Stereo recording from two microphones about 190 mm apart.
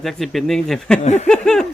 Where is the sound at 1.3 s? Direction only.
5° left (ahead or behind).